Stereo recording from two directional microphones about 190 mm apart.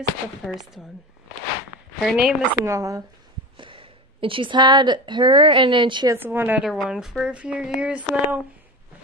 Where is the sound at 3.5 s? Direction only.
25° right (ahead or behind).